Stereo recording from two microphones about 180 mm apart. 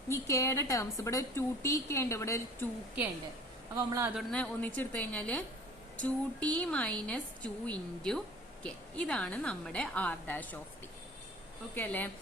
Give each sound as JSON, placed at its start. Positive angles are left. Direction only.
{"t": 0.1, "sound": "a woman's voice", "side_deg": 15}
{"t": 3.8, "sound": "a man's voice", "side_deg": -20}
{"t": 4.1, "sound": "a woman's voice", "side_deg": 5}
{"t": 11.7, "sound": "a woman's voice", "side_deg": 10}